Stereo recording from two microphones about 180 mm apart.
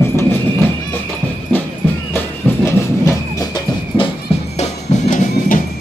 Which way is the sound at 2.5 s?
10° left (ahead or behind).